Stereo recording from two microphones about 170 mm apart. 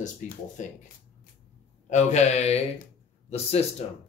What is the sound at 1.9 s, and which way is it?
Speech, 45° left (ahead or behind).